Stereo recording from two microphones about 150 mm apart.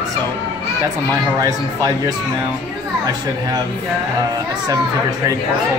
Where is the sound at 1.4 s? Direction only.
25° right (ahead or behind).